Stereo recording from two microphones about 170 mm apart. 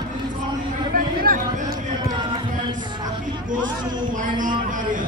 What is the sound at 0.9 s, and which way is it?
Chatter, 60° right (ahead or behind).